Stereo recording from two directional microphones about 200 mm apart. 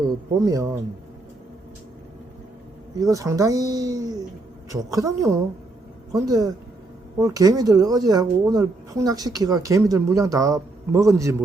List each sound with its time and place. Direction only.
0.3 s speech: 15° right (ahead or behind)
3.0 s speech: 15° right (ahead or behind)